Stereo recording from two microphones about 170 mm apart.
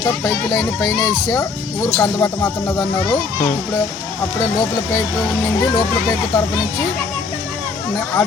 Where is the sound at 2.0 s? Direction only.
15° left (ahead or behind).